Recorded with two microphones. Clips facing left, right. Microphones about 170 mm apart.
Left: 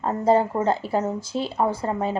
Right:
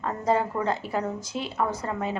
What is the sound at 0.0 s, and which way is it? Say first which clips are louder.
A woman's voice: left 5 dB; 30° left (ahead or behind).